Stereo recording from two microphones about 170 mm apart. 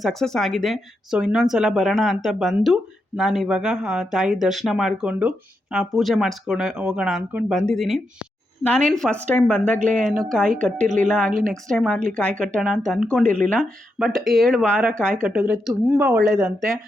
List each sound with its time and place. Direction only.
0.0 s a woman's voice: centre (ahead or behind)
10.8 s a woman's voice: 45° right (ahead or behind)
11.7 s a woman's voice: 5° left (ahead or behind)